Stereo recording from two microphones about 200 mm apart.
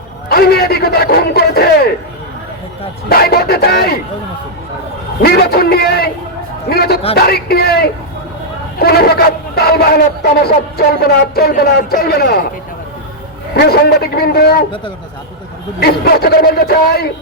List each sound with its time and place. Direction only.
0.3 s a man's voice: 50° left (ahead or behind)
3.1 s speech: 50° left (ahead or behind)
5.2 s speech: 50° left (ahead or behind)
11.0 s speech: 50° left (ahead or behind)
13.6 s speech: 50° left (ahead or behind)
15.8 s speech: 50° left (ahead or behind)